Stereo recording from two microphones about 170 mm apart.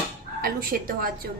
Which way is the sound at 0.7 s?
60° right (ahead or behind).